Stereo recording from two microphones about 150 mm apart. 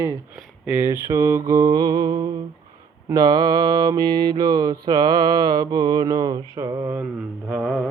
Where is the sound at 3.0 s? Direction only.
25° right (ahead or behind).